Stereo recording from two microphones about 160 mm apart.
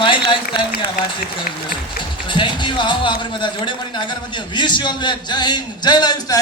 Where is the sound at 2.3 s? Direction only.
30° left (ahead or behind).